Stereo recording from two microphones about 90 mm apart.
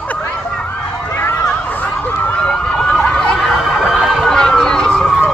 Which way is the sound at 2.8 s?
10° left (ahead or behind).